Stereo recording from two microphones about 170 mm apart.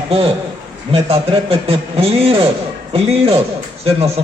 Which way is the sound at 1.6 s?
35° right (ahead or behind).